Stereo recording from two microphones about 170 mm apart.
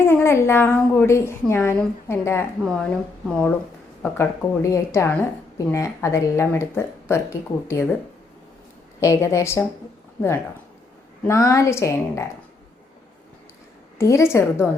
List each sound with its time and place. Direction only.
0.0 s a woman's voice: 15° left (ahead or behind)
4.0 s a woman's voice: 15° left (ahead or behind)
9.0 s a woman's voice: 15° left (ahead or behind)
14.0 s a woman's voice: 15° left (ahead or behind)